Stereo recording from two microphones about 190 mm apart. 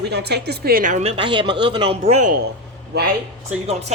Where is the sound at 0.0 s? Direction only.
60° right (ahead or behind); by 2.3 s 35° right (ahead or behind).